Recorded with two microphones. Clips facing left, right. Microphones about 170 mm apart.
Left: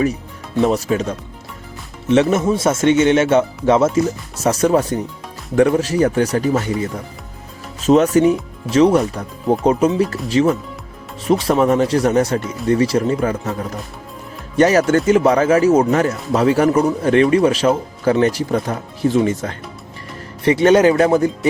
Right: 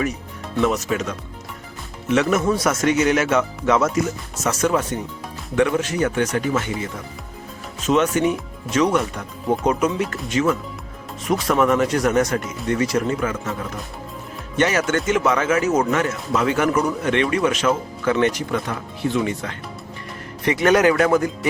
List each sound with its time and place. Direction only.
0.6 s speech: 30° left (ahead or behind)
20.4 s speech: 30° left (ahead or behind)